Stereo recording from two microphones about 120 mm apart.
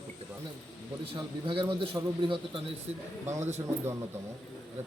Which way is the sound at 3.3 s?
70° right (ahead or behind).